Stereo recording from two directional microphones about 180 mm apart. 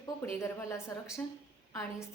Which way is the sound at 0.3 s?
15° left (ahead or behind).